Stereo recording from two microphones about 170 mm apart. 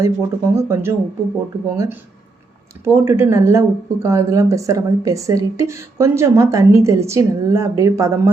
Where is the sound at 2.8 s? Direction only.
15° right (ahead or behind).